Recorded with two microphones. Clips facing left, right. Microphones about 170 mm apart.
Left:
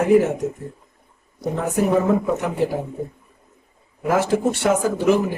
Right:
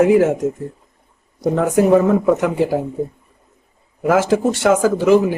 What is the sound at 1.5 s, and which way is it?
Speech, 90° right.